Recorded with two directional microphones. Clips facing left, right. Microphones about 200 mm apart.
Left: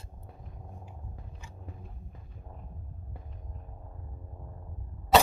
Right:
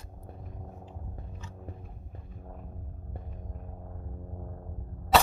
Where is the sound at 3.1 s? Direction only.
50° right (ahead or behind).